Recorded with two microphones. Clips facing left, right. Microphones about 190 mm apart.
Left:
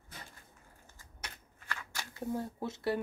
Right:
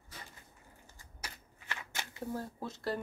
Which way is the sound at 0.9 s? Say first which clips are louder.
Even; 15° right (ahead or behind).